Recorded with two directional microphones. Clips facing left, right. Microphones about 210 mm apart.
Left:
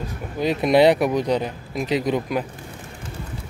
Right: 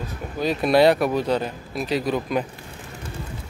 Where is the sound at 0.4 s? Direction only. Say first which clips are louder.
Left 1 dB; 20° left (ahead or behind).